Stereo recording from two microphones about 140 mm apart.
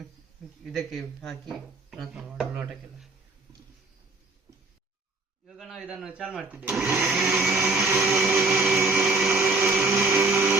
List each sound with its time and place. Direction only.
0.6 s speech: centre (ahead or behind)
5.5 s speech: centre (ahead or behind)
7.1 s speech: 5° right (ahead or behind)
7.9 s a sound: 15° right (ahead or behind)
9.3 s vacuum cleaner: 15° right (ahead or behind)
9.7 s music: 10° right (ahead or behind)